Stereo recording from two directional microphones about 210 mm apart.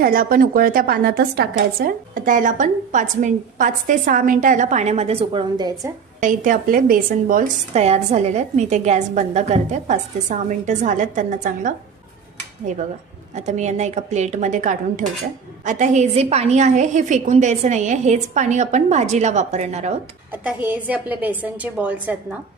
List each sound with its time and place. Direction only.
0.0 s a woman's voice: 45° right (ahead or behind); by 5.9 s 20° right (ahead or behind)
6.1 s a woman's voice: 40° right (ahead or behind)
20.3 s a woman's voice: 5° right (ahead or behind)